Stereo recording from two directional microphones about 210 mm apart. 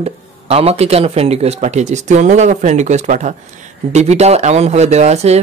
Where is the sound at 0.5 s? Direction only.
30° right (ahead or behind).